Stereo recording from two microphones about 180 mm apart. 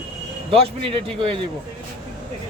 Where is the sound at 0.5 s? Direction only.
30° right (ahead or behind).